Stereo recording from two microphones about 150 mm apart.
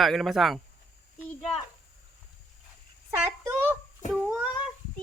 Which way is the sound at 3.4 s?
15° right (ahead or behind).